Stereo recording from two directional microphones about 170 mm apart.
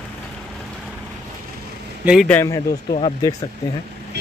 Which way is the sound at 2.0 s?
5° right (ahead or behind).